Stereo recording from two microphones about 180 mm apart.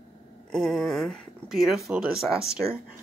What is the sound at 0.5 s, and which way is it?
Speech, centre (ahead or behind).